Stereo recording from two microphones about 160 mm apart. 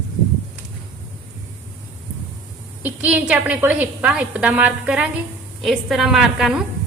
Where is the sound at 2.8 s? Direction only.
10° right (ahead or behind).